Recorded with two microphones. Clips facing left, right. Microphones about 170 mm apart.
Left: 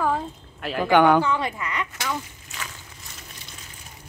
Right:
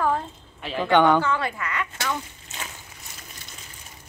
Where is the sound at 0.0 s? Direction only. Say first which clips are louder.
Even; 5° left (ahead or behind).